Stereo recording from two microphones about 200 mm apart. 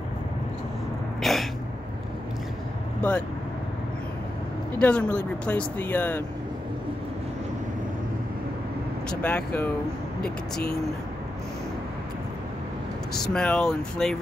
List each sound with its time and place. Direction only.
1.2 s a sound: centre (ahead or behind)
3.0 s speech: 5° left (ahead or behind)
4.7 s speech: 5° left (ahead or behind)
9.1 s speech: 5° left (ahead or behind)
10.2 s speech: 50° left (ahead or behind)
13.2 s speech: 5° left (ahead or behind)